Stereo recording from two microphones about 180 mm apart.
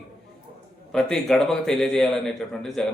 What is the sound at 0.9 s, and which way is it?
A man's voice, centre (ahead or behind).